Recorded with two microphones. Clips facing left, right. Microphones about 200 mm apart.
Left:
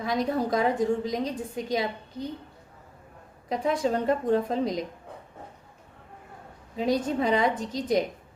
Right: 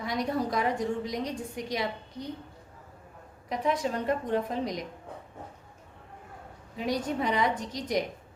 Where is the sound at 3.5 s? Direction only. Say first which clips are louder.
Left 3 dB; 30° left (ahead or behind).